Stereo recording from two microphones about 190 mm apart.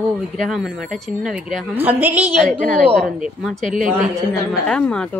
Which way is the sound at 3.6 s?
40° right (ahead or behind).